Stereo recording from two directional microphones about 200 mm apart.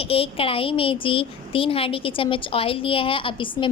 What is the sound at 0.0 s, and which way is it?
A woman's voice, 30° left (ahead or behind).